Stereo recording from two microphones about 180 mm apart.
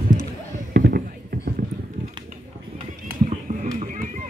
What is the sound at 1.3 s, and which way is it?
Run, 55° right (ahead or behind).